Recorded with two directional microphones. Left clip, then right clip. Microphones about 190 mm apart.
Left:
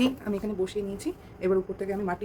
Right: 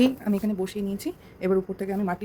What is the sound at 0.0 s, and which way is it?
A woman's voice, 45° right (ahead or behind).